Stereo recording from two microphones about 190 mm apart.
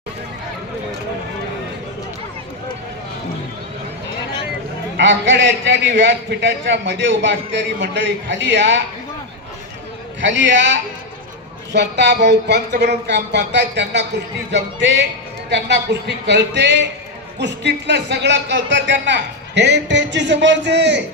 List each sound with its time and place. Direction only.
4.9 s a man's voice: 75° right (ahead or behind)
10.2 s a man's voice: 70° right (ahead or behind)